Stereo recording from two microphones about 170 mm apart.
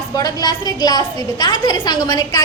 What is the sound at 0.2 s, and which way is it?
A woman's voice, 25° left (ahead or behind).